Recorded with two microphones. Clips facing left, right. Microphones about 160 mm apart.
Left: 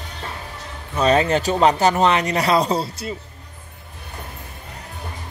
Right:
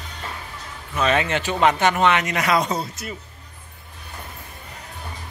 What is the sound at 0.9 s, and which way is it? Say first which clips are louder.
Speech: left 4 dB; 35° left (ahead or behind).